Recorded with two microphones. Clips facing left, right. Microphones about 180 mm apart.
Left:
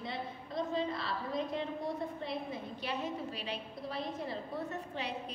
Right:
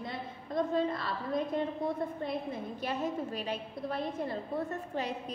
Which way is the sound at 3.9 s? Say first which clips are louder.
Right 4 dB; 50° right (ahead or behind).